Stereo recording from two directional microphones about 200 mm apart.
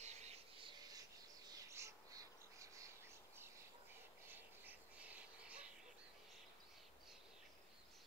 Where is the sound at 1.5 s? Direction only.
15° right (ahead or behind).